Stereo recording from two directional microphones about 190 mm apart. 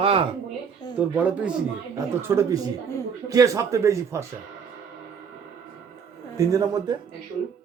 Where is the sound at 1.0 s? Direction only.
10° right (ahead or behind).